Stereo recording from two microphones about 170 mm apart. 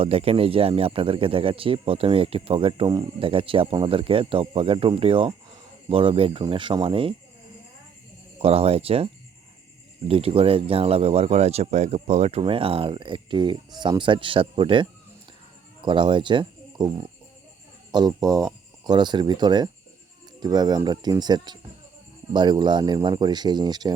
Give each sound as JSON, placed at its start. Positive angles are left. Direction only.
{"t": 0.0, "sound": "speech", "side_deg": -35}
{"t": 8.4, "sound": "speech", "side_deg": -35}
{"t": 10.1, "sound": "speech", "side_deg": -35}